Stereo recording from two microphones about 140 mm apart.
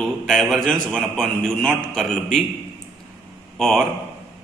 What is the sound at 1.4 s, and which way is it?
A man's voice, 5° left (ahead or behind).